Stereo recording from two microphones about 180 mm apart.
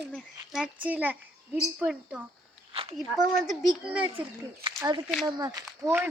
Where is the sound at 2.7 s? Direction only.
30° right (ahead or behind).